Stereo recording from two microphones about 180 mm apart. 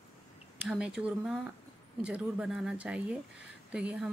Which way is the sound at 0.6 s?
5° right (ahead or behind).